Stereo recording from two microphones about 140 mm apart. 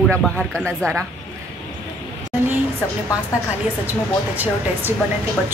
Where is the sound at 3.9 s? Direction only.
10° right (ahead or behind).